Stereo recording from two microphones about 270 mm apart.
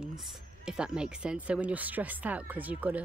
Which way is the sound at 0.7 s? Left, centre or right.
Centre.